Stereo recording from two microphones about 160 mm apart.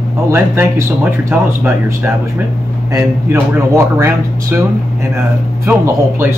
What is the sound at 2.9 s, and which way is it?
Speech, 15° right (ahead or behind).